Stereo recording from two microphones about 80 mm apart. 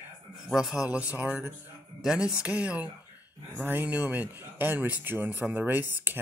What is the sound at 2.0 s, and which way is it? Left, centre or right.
Speech, centre.